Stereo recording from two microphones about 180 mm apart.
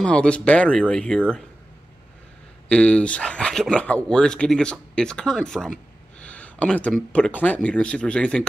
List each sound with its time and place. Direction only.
0.0 s speech: 5° left (ahead or behind)
2.7 s speech: 5° left (ahead or behind)